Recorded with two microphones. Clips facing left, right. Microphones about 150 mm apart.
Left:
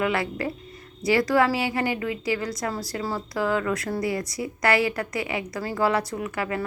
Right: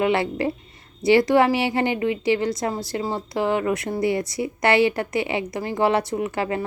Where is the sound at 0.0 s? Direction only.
25° right (ahead or behind).